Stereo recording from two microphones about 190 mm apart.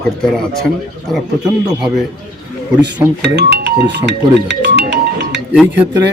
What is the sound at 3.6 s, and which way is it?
Music, 65° right (ahead or behind).